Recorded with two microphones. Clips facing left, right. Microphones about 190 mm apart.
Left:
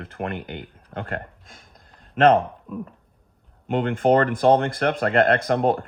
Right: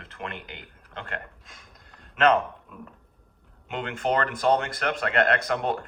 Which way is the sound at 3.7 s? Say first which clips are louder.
Left 8 dB; 55° left (ahead or behind).